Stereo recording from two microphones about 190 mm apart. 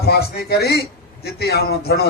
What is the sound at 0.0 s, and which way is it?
A man's voice, 55° left (ahead or behind).